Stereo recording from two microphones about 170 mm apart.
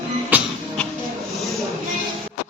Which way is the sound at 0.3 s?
10° right (ahead or behind).